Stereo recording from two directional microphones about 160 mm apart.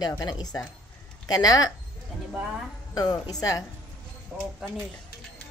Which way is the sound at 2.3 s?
5° right (ahead or behind).